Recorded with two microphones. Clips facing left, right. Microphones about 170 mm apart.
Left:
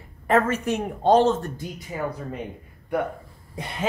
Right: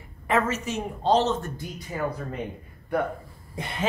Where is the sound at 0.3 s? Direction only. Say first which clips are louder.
Left 4 dB; 50° left (ahead or behind).